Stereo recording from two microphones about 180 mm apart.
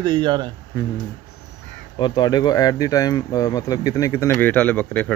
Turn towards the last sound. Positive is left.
turn(degrees=10)  # may be behind; listen again after turning